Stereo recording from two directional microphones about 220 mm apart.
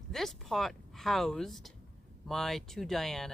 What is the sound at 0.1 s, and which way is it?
Speech, centre (ahead or behind).